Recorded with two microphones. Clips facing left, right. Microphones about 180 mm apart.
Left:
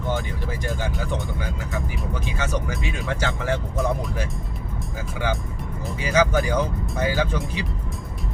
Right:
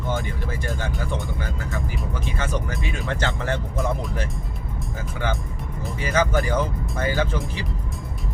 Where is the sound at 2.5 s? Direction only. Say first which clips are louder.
Left 1 dB; 10° left (ahead or behind).